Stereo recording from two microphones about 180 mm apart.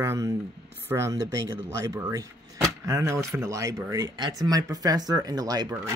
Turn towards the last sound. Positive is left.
turn(degrees=-20)  # may be behind; listen again after turning